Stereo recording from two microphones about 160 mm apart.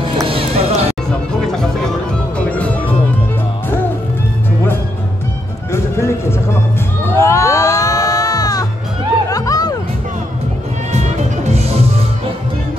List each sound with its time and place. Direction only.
0.3 s a sound: 40° right (ahead or behind)
2.3 s music: 10° left (ahead or behind)
5.7 s music: 15° left (ahead or behind)
7.2 s music: 15° left (ahead or behind)
10.9 s music: 45° right (ahead or behind)